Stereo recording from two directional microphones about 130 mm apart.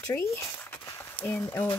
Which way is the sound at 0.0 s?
20° left (ahead or behind).